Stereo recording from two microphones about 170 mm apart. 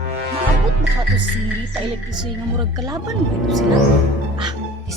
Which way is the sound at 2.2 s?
25° right (ahead or behind).